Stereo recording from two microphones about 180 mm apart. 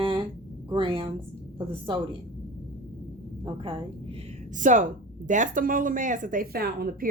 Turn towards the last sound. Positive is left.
turn(degrees=-55)  # may be behind; listen again after turning